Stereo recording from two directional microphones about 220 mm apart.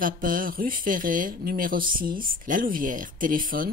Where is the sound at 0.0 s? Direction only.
40° right (ahead or behind).